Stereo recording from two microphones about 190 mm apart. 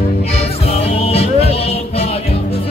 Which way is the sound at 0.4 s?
35° left (ahead or behind).